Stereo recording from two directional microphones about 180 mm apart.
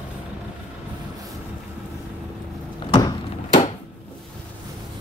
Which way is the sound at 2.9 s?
25° left (ahead or behind).